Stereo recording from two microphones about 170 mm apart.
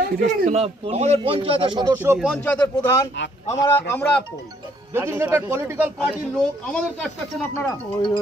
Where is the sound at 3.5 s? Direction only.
15° left (ahead or behind).